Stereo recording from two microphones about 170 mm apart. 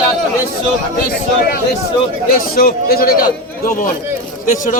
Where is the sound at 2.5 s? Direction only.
60° left (ahead or behind).